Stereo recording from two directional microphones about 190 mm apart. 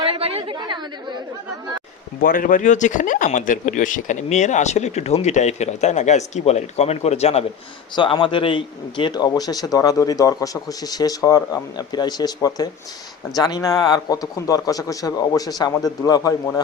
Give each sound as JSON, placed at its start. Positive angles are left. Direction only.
{"t": 0.0, "sound": "a woman's voice", "side_deg": -30}
{"t": 2.2, "sound": "a man's voice", "side_deg": 45}